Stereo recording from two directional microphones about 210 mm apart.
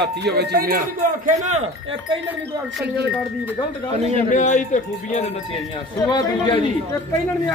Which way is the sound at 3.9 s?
30° right (ahead or behind).